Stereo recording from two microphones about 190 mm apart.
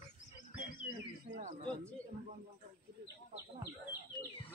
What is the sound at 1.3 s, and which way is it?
Speech, 40° right (ahead or behind).